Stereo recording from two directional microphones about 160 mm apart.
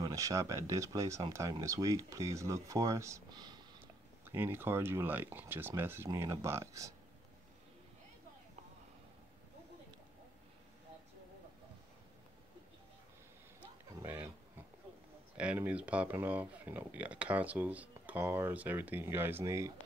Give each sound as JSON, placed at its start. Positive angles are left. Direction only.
{"t": 0.0, "sound": "speech", "side_deg": -20}
{"t": 3.8, "sound": "speech", "side_deg": -15}
{"t": 13.6, "sound": "a sound", "side_deg": -10}
{"t": 15.3, "sound": "speech", "side_deg": -5}